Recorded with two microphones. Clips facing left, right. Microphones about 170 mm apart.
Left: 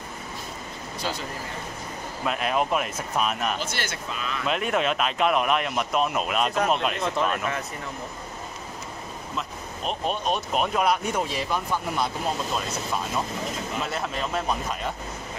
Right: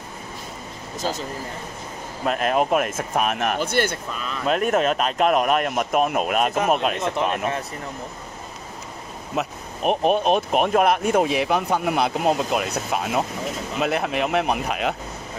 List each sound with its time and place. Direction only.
1.0 s speech: 40° right (ahead or behind)
2.2 s speech: 45° right (ahead or behind)
7.0 s speech: 20° right (ahead or behind)
9.3 s speech: 65° right (ahead or behind)